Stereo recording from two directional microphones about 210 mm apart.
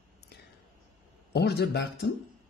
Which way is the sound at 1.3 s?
50° left (ahead or behind).